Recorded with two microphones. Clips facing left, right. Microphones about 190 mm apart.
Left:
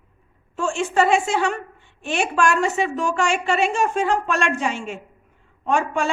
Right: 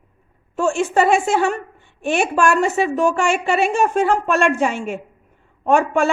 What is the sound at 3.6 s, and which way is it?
Speech, 60° right (ahead or behind).